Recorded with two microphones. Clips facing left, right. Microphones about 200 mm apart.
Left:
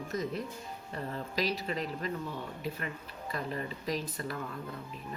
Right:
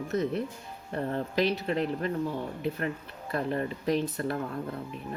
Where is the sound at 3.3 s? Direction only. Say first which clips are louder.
Right 7 dB; 55° right (ahead or behind).